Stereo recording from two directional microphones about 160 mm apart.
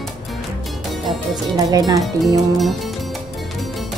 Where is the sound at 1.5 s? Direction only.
20° right (ahead or behind).